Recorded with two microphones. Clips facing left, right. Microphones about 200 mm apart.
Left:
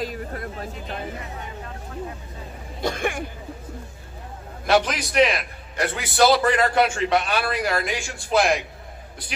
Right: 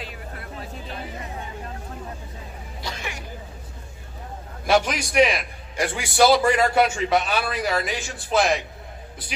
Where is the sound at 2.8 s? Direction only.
55° left (ahead or behind).